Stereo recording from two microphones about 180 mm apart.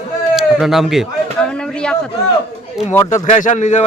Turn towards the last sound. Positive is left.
turn(degrees=40)  # may be behind; listen again after turning